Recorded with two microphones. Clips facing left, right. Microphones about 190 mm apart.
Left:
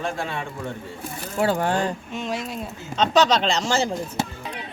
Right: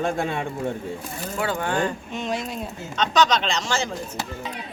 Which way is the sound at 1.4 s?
35° left (ahead or behind).